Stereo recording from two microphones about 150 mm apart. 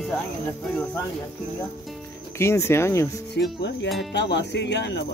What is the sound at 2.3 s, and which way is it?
Speech, 20° left (ahead or behind).